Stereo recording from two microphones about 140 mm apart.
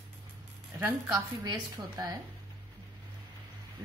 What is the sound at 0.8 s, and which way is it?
A woman's voice, 15° right (ahead or behind).